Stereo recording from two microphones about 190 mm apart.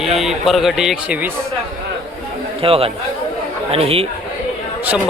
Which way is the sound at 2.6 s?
30° right (ahead or behind).